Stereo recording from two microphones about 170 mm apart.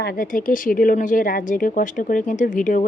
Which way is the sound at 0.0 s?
55° left (ahead or behind).